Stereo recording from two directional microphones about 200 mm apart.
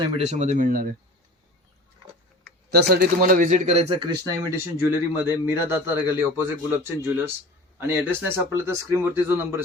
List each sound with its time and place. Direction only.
0.0 s a man's voice: 35° right (ahead or behind)
2.6 s a man's voice: 50° right (ahead or behind); by 9.6 s 10° right (ahead or behind)